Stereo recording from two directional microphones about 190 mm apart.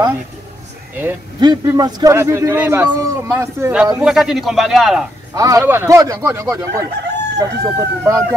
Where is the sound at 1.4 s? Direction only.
20° right (ahead or behind); by 5.0 s centre (ahead or behind).